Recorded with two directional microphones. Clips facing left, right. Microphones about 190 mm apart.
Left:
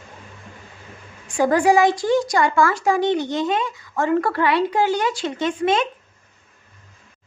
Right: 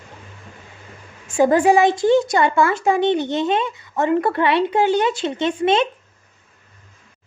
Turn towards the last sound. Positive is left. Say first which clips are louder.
# right 2 dB
turn(degrees=-25)  # may be behind; listen again after turning